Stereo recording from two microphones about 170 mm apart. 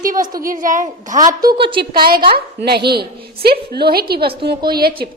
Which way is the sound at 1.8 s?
60° right (ahead or behind).